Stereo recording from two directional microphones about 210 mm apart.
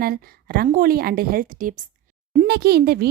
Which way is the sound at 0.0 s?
45° right (ahead or behind).